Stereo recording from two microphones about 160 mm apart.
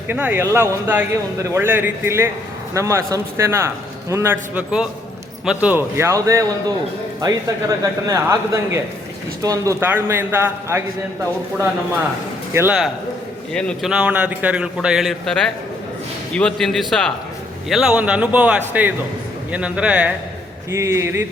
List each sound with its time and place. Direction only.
0.1 s speech: 10° right (ahead or behind)
13.5 s a man's voice: 5° left (ahead or behind)
20.7 s speech: 15° right (ahead or behind)